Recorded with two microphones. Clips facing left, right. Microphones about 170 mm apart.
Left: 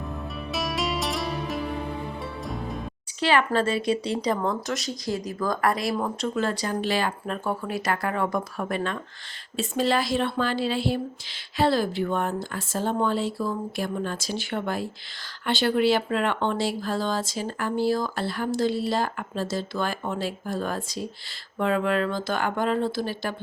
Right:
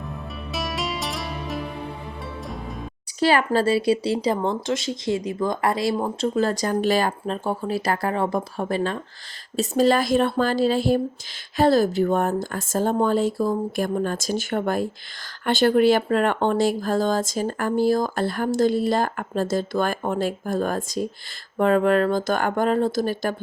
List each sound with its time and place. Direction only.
0.5 s music: centre (ahead or behind)
3.2 s speech: 40° right (ahead or behind)
7.3 s speech: 30° right (ahead or behind); by 23.3 s 45° right (ahead or behind)